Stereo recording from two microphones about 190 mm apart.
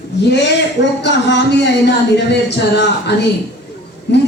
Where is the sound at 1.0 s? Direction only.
65° left (ahead or behind).